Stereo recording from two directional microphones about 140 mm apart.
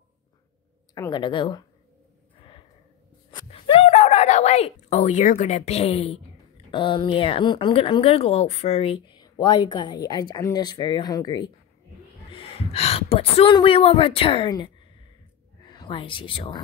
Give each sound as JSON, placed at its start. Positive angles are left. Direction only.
{"t": 0.9, "sound": "a woman's voice", "side_deg": 30}
{"t": 2.3, "sound": "a sound", "side_deg": 40}
{"t": 6.7, "sound": "a woman's voice", "side_deg": 35}
{"t": 12.3, "sound": "a woman's voice", "side_deg": 45}
{"t": 15.6, "sound": "speech", "side_deg": 35}